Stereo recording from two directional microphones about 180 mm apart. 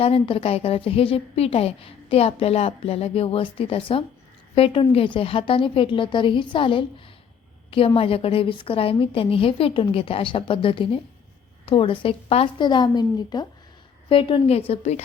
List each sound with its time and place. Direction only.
0.0 s a woman's voice: 30° left (ahead or behind)